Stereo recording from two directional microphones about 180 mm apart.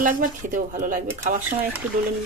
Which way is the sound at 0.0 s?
50° right (ahead or behind).